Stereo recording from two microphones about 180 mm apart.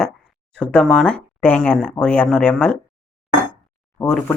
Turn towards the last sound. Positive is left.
turn(degrees=5)  # may be behind; listen again after turning